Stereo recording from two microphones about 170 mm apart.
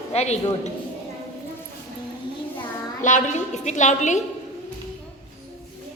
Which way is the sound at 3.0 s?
45° left (ahead or behind).